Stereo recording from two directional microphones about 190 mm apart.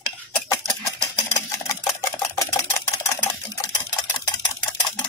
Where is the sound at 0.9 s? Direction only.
20° left (ahead or behind).